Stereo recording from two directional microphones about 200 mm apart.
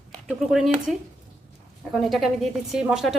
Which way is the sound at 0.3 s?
Centre (ahead or behind).